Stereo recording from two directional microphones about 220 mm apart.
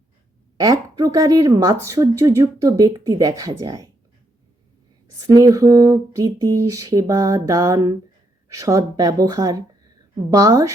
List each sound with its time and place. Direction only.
0.5 s a woman's voice: 15° right (ahead or behind)
5.2 s a woman's voice: 15° right (ahead or behind)